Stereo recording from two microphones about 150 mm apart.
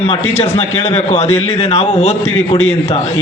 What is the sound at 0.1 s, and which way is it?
A man's voice, 40° left (ahead or behind).